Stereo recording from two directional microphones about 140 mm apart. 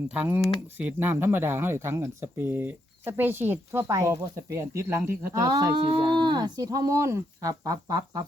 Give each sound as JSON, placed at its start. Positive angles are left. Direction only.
{"t": 0.1, "sound": "speech", "side_deg": -10}